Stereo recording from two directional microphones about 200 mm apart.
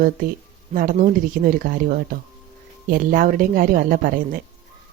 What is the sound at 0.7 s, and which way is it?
A woman's voice, 45° right (ahead or behind).